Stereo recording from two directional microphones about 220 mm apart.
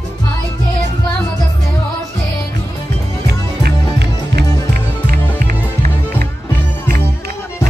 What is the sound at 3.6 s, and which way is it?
Music, 50° right (ahead or behind).